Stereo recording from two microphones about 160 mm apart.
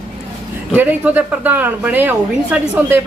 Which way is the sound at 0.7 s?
10° right (ahead or behind).